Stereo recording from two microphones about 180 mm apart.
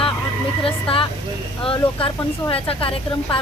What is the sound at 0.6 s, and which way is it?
A woman's voice, 30° left (ahead or behind).